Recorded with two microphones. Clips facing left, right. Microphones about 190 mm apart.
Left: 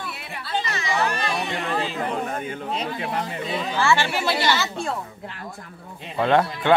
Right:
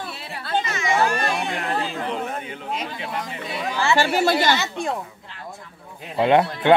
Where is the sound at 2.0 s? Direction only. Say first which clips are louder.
Left 1 dB; 45° left (ahead or behind).